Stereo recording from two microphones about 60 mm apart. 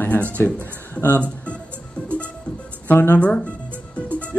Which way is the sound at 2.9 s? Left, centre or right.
Left.